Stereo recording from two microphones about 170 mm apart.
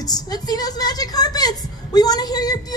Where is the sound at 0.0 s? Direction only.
25° left (ahead or behind).